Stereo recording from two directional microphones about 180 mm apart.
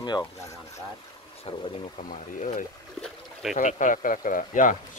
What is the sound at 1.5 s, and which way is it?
Speech, 35° left (ahead or behind).